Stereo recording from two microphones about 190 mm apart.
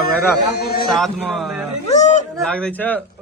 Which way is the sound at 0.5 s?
55° left (ahead or behind).